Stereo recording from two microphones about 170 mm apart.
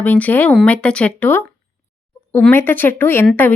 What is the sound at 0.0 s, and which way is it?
Speech, 10° left (ahead or behind).